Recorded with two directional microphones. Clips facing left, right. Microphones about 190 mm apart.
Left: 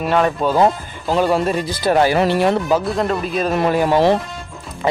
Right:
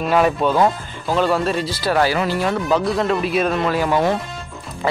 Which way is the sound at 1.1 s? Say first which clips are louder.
Left 2 dB; 15° left (ahead or behind).